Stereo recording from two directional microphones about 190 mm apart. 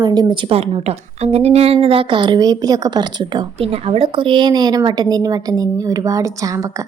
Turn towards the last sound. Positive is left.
turn(degrees=-20)  # may be behind; listen again after turning